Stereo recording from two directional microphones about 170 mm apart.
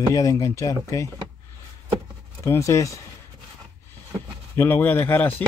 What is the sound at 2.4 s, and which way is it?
Speech, 15° left (ahead or behind).